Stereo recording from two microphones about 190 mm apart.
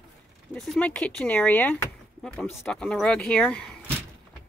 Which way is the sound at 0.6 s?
5° left (ahead or behind).